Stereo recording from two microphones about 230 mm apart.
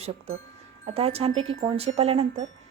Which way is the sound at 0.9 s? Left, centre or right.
Right.